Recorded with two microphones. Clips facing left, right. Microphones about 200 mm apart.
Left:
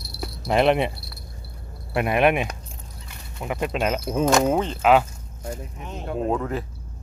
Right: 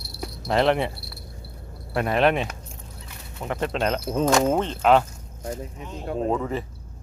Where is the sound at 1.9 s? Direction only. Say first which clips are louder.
Left 1 dB; 15° left (ahead or behind).